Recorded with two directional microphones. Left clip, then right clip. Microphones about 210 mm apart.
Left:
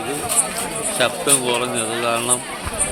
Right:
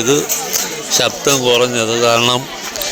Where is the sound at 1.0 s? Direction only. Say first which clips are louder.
Right 4 dB; 40° right (ahead or behind).